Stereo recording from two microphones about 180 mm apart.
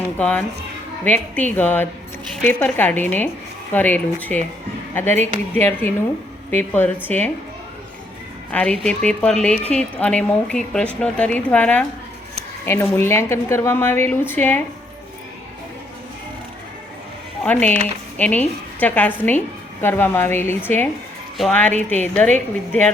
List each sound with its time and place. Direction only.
0.2 s a woman's voice: 5° left (ahead or behind)
8.4 s a woman's voice: 5° left (ahead or behind)
17.4 s a woman's voice: 10° left (ahead or behind)